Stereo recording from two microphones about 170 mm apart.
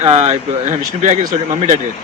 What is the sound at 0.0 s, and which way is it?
A man's voice, 40° right (ahead or behind).